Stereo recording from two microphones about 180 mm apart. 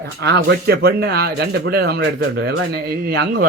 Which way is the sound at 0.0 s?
70° right (ahead or behind).